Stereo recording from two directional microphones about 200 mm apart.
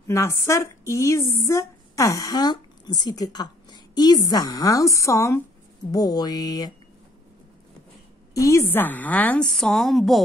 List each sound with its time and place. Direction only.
0.1 s speech: 15° left (ahead or behind)
8.4 s speech: 15° left (ahead or behind)